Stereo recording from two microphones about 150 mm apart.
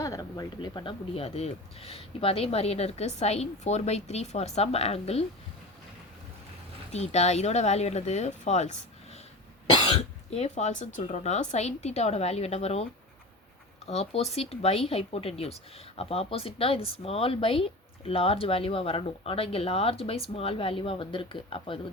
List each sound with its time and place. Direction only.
0.0 s speech: 25° left (ahead or behind); by 5.2 s 45° left (ahead or behind)
6.9 s speech: 45° left (ahead or behind)
9.7 s speech: 35° left (ahead or behind)
13.8 s speech: 45° left (ahead or behind)